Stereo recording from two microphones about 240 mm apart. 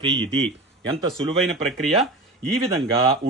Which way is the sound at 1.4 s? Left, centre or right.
Centre.